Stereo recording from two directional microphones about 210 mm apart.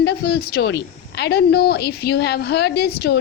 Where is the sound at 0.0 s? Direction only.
50° left (ahead or behind).